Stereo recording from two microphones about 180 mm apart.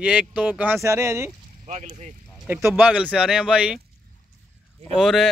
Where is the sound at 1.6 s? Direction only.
40° right (ahead or behind).